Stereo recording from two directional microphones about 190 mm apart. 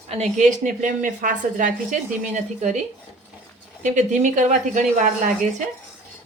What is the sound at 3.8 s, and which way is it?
A woman's voice, 40° right (ahead or behind).